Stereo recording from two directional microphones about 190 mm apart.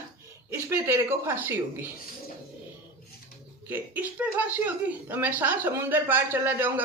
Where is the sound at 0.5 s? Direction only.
15° right (ahead or behind).